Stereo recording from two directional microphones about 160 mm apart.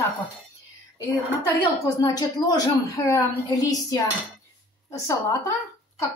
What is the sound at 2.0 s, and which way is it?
A woman's voice, 25° left (ahead or behind).